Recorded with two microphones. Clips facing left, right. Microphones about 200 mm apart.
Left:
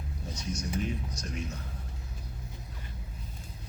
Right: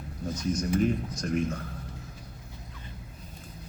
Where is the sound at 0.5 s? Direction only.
50° right (ahead or behind).